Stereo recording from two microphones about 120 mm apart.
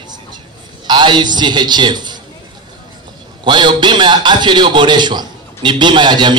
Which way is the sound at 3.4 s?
40° right (ahead or behind).